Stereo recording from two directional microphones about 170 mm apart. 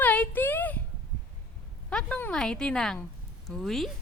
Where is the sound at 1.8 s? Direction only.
5° left (ahead or behind).